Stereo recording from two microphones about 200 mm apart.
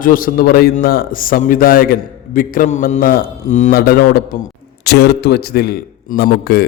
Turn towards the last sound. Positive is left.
turn(degrees=50)  # may be behind; listen again after turning